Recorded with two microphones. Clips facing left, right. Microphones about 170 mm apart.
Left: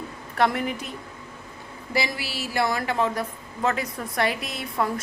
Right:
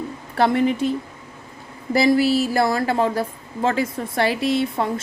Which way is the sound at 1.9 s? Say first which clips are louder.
Right 12 dB; 40° right (ahead or behind).